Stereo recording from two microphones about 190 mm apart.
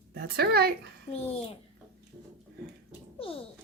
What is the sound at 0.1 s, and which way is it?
Speech, 55° right (ahead or behind).